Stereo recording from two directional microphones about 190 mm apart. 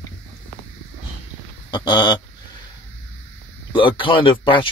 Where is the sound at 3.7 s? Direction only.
25° left (ahead or behind).